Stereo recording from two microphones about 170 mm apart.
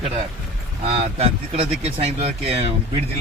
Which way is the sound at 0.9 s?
35° right (ahead or behind).